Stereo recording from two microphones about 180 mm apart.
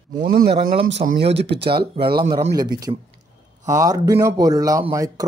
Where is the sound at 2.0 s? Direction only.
25° right (ahead or behind).